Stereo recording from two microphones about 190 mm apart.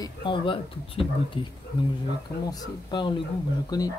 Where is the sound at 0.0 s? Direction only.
25° left (ahead or behind).